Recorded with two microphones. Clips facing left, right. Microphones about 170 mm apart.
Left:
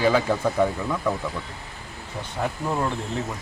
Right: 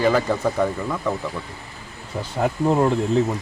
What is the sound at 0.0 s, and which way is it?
Speech, centre (ahead or behind).